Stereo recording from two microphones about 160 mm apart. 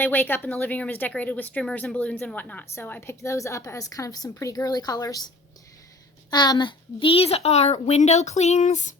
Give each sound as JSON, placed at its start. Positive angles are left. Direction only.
{"t": 0.0, "sound": "speech", "side_deg": 10}
{"t": 6.3, "sound": "a child's voice", "side_deg": 25}